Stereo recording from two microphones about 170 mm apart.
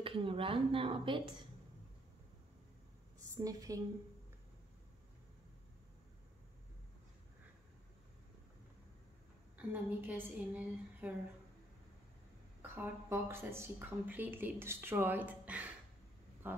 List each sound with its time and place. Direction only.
0.0 s speech: 30° right (ahead or behind)
3.3 s a woman's voice: 20° right (ahead or behind)
9.6 s speech: 10° right (ahead or behind)
12.6 s speech: 15° right (ahead or behind)